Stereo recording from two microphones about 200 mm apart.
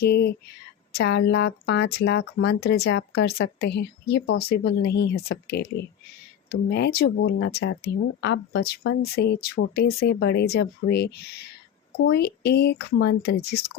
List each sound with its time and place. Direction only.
0.0 s speech: 55° left (ahead or behind)